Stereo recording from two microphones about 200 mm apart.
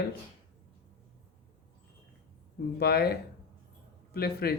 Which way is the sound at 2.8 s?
55° left (ahead or behind).